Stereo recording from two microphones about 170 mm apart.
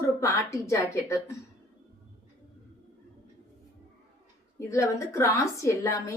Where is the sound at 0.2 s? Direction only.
15° left (ahead or behind).